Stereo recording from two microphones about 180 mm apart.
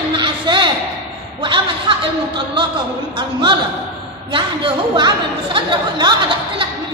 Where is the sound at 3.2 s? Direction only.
25° right (ahead or behind).